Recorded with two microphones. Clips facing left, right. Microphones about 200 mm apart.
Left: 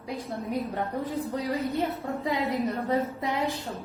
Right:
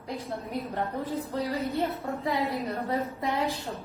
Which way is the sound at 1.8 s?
15° left (ahead or behind).